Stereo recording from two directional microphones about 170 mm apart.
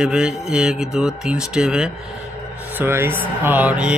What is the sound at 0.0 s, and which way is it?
A man's voice, 5° right (ahead or behind).